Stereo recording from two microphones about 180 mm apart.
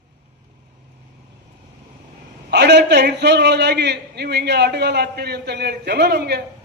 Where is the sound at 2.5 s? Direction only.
70° right (ahead or behind).